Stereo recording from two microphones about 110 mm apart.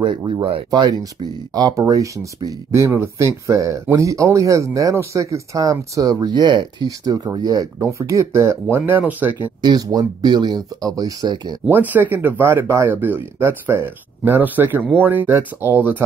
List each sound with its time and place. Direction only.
0.0 s speech: 45° right (ahead or behind)
0.7 s speech: 40° right (ahead or behind)
7.8 s speech: 25° right (ahead or behind)
9.6 s speech: 40° right (ahead or behind)
11.7 s speech: 15° right (ahead or behind)